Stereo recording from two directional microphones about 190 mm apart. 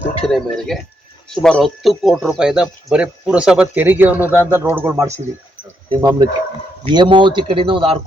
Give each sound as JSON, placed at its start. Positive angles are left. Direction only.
{"t": 0.3, "sound": "a man's voice", "side_deg": 0}